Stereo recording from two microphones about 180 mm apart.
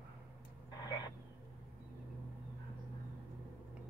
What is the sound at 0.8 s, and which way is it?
Vehicle, 20° left (ahead or behind).